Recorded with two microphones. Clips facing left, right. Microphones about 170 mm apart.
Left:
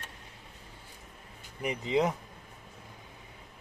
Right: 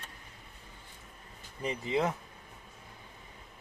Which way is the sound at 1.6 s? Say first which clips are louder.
Left 3 dB; 15° left (ahead or behind).